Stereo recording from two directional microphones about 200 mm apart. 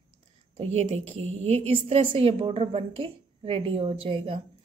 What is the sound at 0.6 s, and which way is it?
A woman's voice, 30° right (ahead or behind).